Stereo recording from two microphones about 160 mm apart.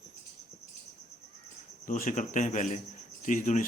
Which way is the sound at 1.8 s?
55° left (ahead or behind).